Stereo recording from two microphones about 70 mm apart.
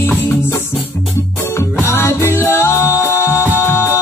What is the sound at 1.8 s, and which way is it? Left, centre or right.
Music, left.